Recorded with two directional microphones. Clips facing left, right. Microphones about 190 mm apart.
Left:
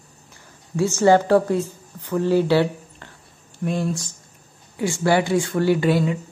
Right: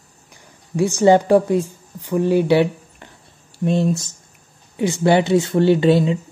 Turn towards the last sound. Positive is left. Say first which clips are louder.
# right 4 dB
turn(degrees=-25)  # may be behind; listen again after turning